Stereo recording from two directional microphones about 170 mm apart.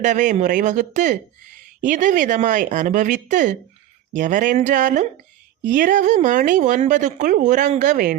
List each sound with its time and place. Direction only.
0.0 s speech: 50° right (ahead or behind)